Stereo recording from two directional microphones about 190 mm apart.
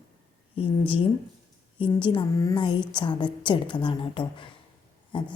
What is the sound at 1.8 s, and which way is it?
A woman's voice, 25° left (ahead or behind).